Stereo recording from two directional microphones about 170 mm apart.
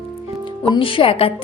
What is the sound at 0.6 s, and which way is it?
Speech, 30° left (ahead or behind).